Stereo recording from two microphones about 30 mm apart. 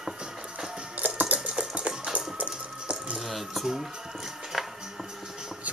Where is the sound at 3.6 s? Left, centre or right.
Centre.